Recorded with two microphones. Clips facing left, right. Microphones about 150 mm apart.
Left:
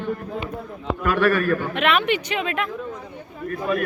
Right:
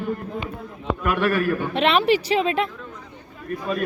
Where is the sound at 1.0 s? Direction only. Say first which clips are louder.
Left 2 dB; 20° right (ahead or behind).